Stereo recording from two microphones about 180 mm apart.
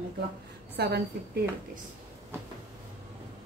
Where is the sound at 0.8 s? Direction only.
65° right (ahead or behind).